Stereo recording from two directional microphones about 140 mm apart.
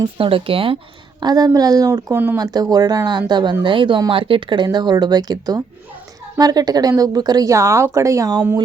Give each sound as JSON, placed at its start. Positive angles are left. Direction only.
{"t": 0.0, "sound": "speech", "side_deg": -40}
{"t": 1.2, "sound": "speech", "side_deg": -30}
{"t": 2.4, "sound": "speech", "side_deg": -30}